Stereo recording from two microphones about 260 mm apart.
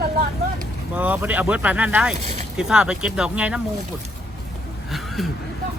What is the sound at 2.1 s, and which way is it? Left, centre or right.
Boat, right.